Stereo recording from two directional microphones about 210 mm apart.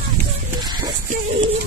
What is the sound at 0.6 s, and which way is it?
Music, 20° right (ahead or behind).